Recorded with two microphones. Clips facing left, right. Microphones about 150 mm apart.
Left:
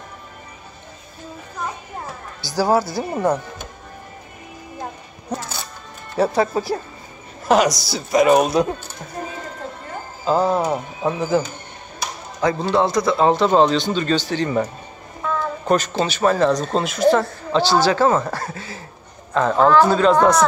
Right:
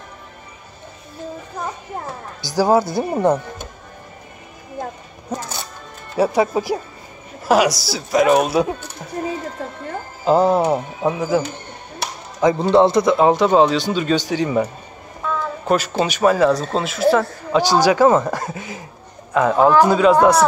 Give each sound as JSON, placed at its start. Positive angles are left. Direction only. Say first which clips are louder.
{"t": 2.4, "sound": "a man's voice", "louder": "right 2 dB", "side_deg": -15}
{"t": 6.1, "sound": "a man's voice", "louder": "right 1 dB", "side_deg": -10}
{"t": 10.2, "sound": "speech", "louder": "right 3 dB", "side_deg": -20}
{"t": 11.0, "sound": "a man's voice", "louder": "right 1 dB", "side_deg": -10}
{"t": 17.5, "sound": "a man's voice", "louder": "right 2 dB", "side_deg": -15}